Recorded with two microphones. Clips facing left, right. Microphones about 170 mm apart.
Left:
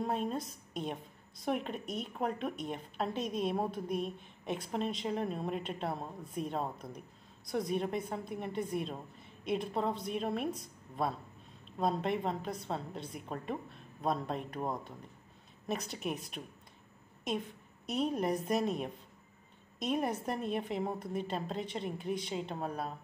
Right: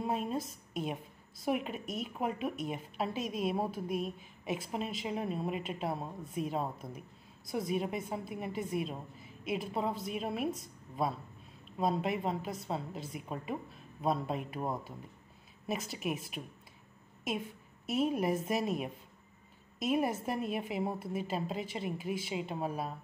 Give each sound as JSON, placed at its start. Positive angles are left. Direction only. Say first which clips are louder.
{"t": 0.0, "sound": "a woman's voice", "louder": "even", "side_deg": -5}